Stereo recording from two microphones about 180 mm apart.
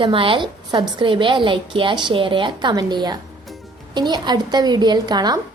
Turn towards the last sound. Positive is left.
turn(degrees=-25)  # may be behind; listen again after turning